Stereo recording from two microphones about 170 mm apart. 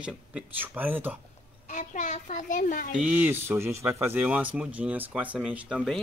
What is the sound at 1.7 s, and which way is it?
A child's voice, 45° left (ahead or behind).